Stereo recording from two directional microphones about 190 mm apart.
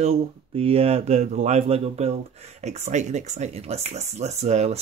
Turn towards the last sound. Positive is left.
turn(degrees=-35)  # may be behind; listen again after turning